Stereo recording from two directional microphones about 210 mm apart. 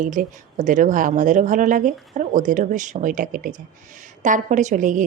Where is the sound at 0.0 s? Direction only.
40° right (ahead or behind).